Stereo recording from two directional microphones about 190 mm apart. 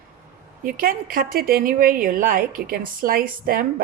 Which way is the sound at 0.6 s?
50° right (ahead or behind).